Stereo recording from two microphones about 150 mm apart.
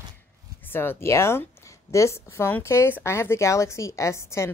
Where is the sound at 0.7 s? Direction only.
15° left (ahead or behind).